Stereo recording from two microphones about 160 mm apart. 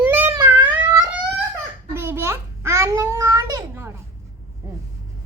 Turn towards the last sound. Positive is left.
turn(degrees=-15)  # may be behind; listen again after turning